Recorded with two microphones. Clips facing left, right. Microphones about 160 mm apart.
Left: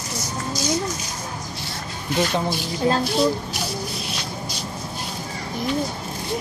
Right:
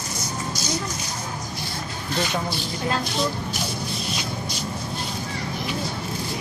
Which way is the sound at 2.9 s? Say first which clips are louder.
Left 6 dB; 35° left (ahead or behind).